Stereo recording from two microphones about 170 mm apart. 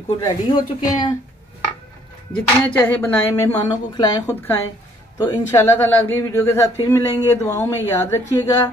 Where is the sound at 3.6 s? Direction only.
25° left (ahead or behind).